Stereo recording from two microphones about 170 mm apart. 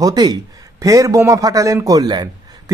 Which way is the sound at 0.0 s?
25° right (ahead or behind).